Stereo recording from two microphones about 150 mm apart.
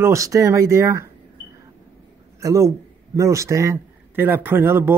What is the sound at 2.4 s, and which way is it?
A man's voice, 20° right (ahead or behind).